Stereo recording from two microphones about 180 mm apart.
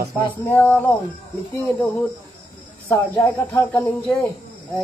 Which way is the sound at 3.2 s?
15° left (ahead or behind).